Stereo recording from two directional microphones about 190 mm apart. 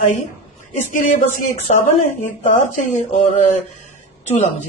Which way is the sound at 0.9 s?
45° left (ahead or behind).